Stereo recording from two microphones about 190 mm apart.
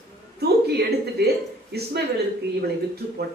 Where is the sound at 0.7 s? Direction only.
55° right (ahead or behind).